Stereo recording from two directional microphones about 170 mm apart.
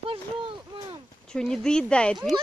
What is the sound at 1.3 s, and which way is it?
Speech, 5° left (ahead or behind).